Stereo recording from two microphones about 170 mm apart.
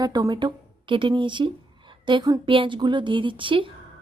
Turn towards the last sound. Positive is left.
turn(degrees=-30)  # may be behind; listen again after turning